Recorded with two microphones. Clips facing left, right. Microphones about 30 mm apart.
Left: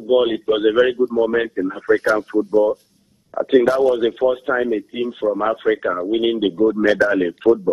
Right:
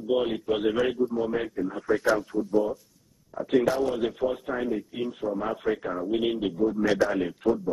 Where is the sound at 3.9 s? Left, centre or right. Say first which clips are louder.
Left 10 dB; left.